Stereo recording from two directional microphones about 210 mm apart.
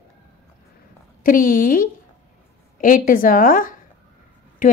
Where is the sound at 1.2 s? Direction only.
40° left (ahead or behind).